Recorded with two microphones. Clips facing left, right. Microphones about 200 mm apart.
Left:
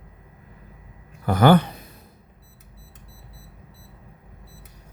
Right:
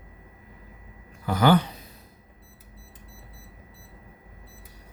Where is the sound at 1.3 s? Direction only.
55° left (ahead or behind).